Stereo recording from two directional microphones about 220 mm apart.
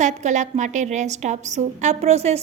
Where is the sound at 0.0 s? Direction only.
35° right (ahead or behind).